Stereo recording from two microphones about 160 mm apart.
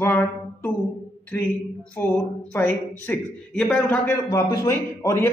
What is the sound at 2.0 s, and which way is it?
A man's voice, 10° left (ahead or behind).